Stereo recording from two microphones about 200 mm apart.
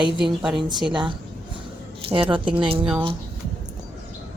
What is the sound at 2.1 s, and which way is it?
Speech, 25° right (ahead or behind).